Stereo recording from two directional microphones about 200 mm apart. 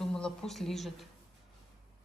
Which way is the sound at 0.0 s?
5° left (ahead or behind).